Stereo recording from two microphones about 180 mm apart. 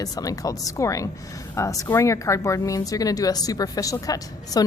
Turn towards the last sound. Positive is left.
turn(degrees=20)  # may be behind; listen again after turning